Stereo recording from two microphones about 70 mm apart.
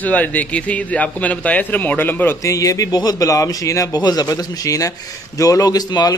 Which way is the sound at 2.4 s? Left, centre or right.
Left.